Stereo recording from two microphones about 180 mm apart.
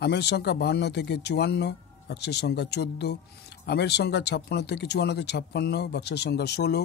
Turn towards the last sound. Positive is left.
turn(degrees=65)  # may be behind; listen again after turning